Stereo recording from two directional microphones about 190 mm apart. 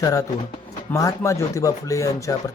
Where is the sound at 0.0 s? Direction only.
15° left (ahead or behind).